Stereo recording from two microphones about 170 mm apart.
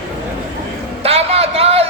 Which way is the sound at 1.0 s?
35° right (ahead or behind).